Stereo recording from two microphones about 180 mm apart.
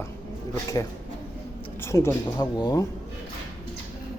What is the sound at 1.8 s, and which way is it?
Speech, 15° left (ahead or behind).